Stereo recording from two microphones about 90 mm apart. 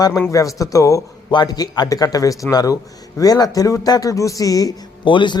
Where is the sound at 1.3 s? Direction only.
50° left (ahead or behind).